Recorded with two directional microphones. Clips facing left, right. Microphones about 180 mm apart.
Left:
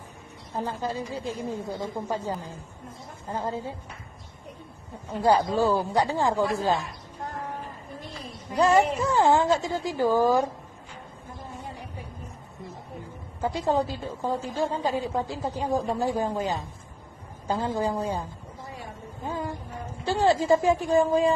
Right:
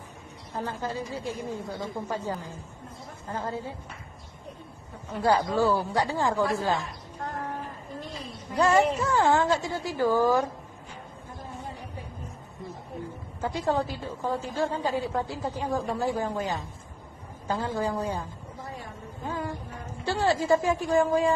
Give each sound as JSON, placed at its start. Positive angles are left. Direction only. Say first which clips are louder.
{"t": 0.6, "sound": "a woman's voice", "louder": "left 2 dB", "side_deg": 15}
{"t": 5.1, "sound": "a woman's voice", "louder": "left 2 dB", "side_deg": 20}
{"t": 8.5, "sound": "a woman's voice", "louder": "left 1 dB", "side_deg": 15}
{"t": 13.4, "sound": "a woman's voice", "louder": "left 2 dB", "side_deg": 15}